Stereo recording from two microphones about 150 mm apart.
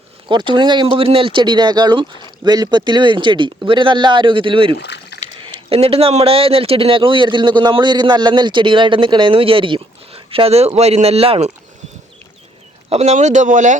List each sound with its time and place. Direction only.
0.3 s a man's voice: 30° right (ahead or behind)
12.9 s speech: 45° right (ahead or behind)